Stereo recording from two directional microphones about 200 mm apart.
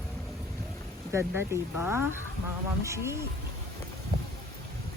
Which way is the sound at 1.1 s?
10° right (ahead or behind).